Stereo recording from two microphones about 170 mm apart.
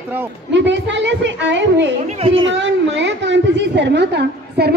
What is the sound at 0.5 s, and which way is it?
Speech, 90° right.